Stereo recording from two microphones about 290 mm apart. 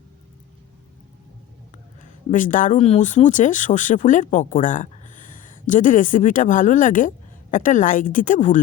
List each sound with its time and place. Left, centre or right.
2.3 s speech: left